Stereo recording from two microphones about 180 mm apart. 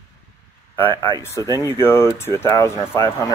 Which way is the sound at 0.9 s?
25° right (ahead or behind).